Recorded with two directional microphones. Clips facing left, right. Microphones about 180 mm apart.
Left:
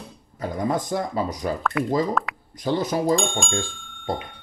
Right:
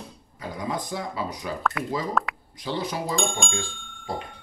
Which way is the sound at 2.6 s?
45° left (ahead or behind).